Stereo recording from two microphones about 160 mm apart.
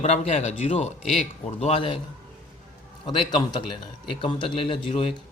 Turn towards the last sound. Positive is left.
turn(degrees=35)  # may be behind; listen again after turning